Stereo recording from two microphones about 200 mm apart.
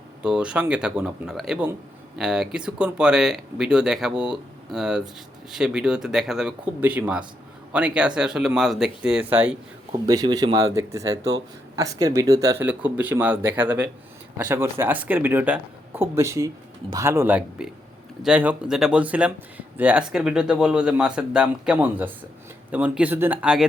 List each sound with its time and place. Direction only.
0.2 s speech: 5° right (ahead or behind)
9.9 s speech: 20° right (ahead or behind); by 23.6 s 5° right (ahead or behind)